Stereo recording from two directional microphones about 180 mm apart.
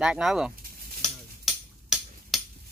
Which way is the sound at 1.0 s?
Centre (ahead or behind).